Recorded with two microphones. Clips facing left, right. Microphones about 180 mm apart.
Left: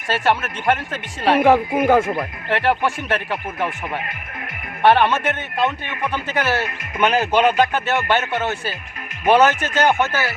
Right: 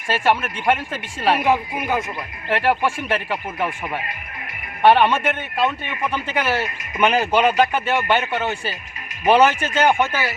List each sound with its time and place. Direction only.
0.1 s a man's voice: 10° right (ahead or behind)
1.4 s speech: 55° left (ahead or behind)
2.5 s a man's voice: 10° right (ahead or behind)